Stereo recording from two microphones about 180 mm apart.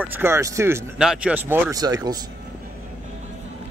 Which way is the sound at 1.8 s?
20° right (ahead or behind).